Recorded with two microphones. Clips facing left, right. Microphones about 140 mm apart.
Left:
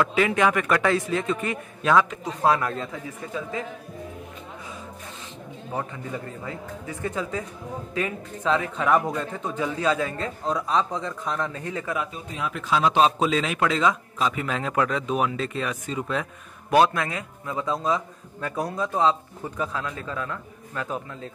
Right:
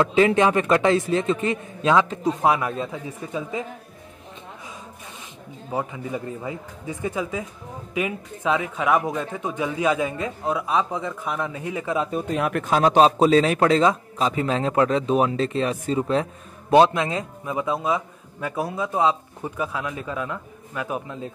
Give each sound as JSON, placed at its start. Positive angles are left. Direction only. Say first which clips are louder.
{"t": 0.0, "sound": "a man's voice", "louder": "right 4 dB", "side_deg": -30}
{"t": 5.7, "sound": "a man's voice", "louder": "right 4 dB", "side_deg": -15}
{"t": 12.1, "sound": "a man's voice", "louder": "right 8 dB", "side_deg": -60}